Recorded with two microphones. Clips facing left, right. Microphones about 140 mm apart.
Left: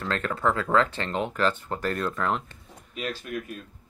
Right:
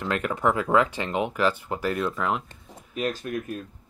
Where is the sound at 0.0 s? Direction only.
15° right (ahead or behind).